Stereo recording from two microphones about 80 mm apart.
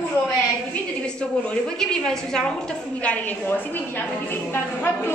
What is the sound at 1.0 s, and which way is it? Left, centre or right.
A woman's voice, centre.